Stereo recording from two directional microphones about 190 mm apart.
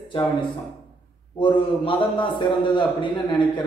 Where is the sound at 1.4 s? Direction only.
25° left (ahead or behind).